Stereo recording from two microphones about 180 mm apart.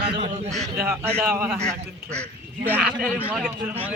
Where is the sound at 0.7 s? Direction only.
15° right (ahead or behind).